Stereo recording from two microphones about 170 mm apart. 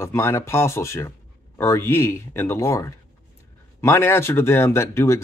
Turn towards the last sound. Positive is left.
turn(degrees=15)  # may be behind; listen again after turning